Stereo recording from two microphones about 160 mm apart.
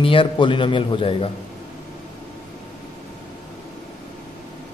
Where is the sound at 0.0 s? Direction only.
35° left (ahead or behind).